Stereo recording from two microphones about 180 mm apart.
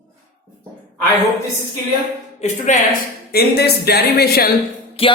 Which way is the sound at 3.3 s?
60° left (ahead or behind).